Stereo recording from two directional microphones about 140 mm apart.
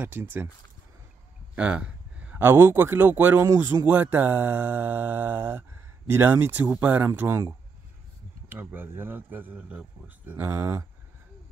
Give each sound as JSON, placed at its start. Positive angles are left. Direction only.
{"t": 0.0, "sound": "speech", "side_deg": -15}
{"t": 1.5, "sound": "speech", "side_deg": -10}
{"t": 8.5, "sound": "speech", "side_deg": -15}